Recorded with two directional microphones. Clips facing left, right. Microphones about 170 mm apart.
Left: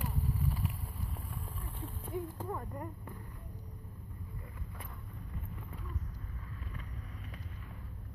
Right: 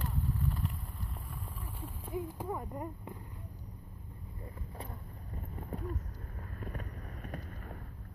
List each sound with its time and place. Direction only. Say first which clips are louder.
0.0 s vehicle: right 1 dB; 10° left (ahead or behind)
1.8 s speech: even; 5° right (ahead or behind)
5.6 s boat: right 8 dB; 45° right (ahead or behind)